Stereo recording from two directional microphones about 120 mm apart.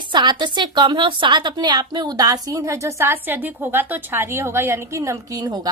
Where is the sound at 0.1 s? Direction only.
40° right (ahead or behind).